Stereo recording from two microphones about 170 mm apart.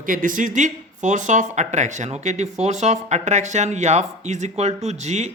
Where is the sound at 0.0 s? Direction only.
50° right (ahead or behind).